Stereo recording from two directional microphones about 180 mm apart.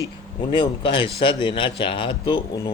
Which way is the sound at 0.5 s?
25° left (ahead or behind).